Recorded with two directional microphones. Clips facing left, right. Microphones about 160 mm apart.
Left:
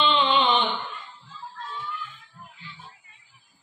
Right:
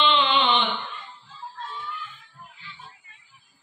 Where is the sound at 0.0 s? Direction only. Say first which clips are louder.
Even; 40° left (ahead or behind).